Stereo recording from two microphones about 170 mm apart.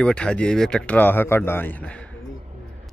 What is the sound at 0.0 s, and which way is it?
Speech, 5° left (ahead or behind).